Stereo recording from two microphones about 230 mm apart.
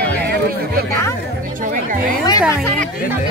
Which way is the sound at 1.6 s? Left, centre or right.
Right.